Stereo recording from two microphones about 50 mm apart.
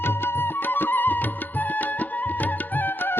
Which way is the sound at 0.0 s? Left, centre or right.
Left.